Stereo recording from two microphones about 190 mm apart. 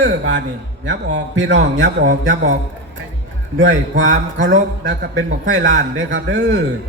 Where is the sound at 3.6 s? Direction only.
80° right; by 6.6 s 65° right (ahead or behind).